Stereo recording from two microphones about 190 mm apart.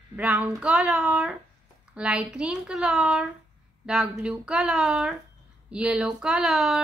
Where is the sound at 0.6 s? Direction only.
5° right (ahead or behind).